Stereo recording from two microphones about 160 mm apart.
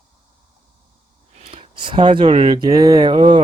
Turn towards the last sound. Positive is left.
turn(degrees=-30)  # may be behind; listen again after turning